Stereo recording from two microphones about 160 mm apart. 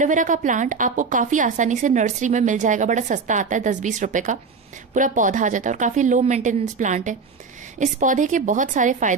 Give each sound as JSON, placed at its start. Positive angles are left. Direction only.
{"t": 0.0, "sound": "a woman's voice", "side_deg": -55}